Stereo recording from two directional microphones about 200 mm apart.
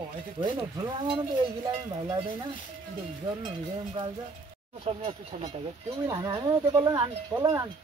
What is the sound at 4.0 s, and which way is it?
Speech, 25° right (ahead or behind).